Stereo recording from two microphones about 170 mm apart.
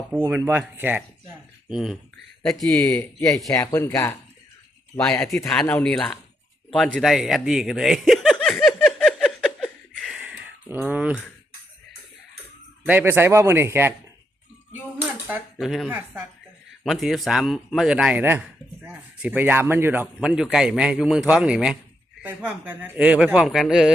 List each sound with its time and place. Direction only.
0.1 s speech: 10° right (ahead or behind)
8.6 s a sound: centre (ahead or behind)
12.8 s speech: 10° right (ahead or behind)
15.5 s speech: centre (ahead or behind)
15.9 s speech: 10° right (ahead or behind)